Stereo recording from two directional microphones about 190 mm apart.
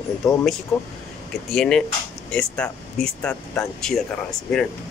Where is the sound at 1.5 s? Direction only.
5° left (ahead or behind).